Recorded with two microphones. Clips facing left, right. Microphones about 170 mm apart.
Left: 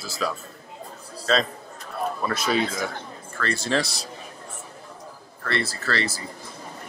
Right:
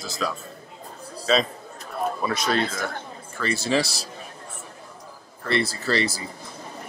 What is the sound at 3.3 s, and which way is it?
Speech, 10° right (ahead or behind).